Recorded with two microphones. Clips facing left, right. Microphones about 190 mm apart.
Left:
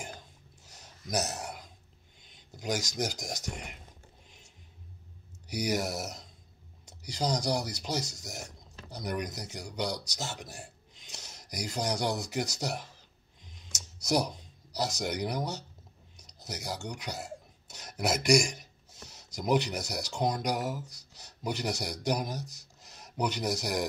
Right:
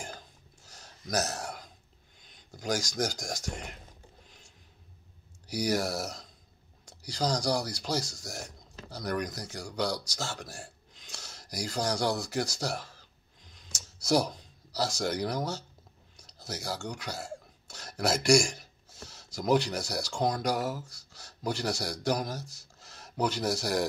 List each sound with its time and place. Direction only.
0.7 s a sound: 20° left (ahead or behind)
2.5 s speech: 20° left (ahead or behind)
5.5 s a man's voice: 20° left (ahead or behind)
14.0 s speech: 20° left (ahead or behind)
16.2 s a sound: 20° left (ahead or behind)
17.0 s speech: 20° left (ahead or behind)